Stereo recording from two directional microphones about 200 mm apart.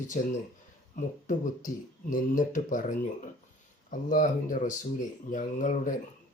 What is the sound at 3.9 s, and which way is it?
Speech, 40° left (ahead or behind).